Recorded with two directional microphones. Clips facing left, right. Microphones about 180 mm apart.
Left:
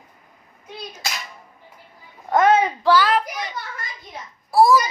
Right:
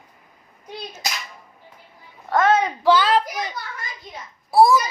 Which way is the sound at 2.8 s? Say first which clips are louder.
Even; 20° right (ahead or behind).